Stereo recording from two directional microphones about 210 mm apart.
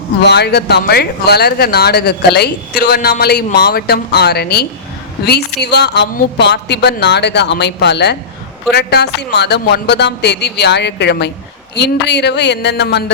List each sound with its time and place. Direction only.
0.3 s a woman's voice: 50° left (ahead or behind)